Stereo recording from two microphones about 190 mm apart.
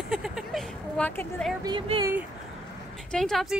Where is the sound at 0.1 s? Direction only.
5° right (ahead or behind).